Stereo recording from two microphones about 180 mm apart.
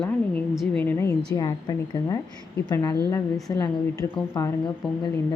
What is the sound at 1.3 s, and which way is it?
Speech, 20° left (ahead or behind).